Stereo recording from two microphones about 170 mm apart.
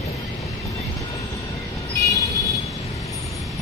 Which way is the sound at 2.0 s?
20° left (ahead or behind).